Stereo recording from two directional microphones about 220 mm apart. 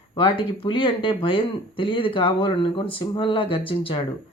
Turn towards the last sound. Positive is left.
turn(degrees=25)  # may be behind; listen again after turning